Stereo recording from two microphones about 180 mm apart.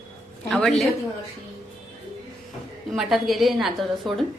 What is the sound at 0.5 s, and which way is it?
Speech, 5° left (ahead or behind).